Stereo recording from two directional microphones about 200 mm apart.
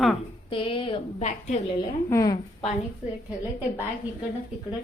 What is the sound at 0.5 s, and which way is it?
A woman's voice, 25° left (ahead or behind).